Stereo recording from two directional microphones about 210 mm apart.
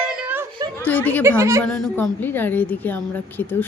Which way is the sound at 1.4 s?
15° right (ahead or behind).